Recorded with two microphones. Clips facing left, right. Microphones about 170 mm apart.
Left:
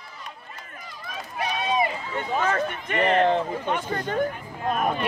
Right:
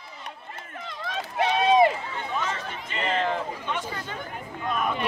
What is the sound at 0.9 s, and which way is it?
Run, 85° right.